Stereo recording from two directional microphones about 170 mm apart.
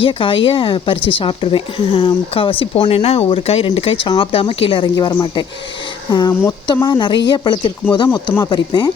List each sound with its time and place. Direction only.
0.0 s speech: 30° left (ahead or behind)